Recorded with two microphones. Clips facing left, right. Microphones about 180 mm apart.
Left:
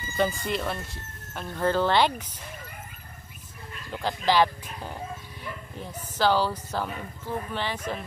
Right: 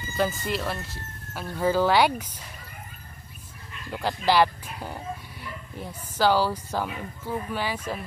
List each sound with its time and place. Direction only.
0.2 s speech: centre (ahead or behind)
3.9 s speech: 10° right (ahead or behind)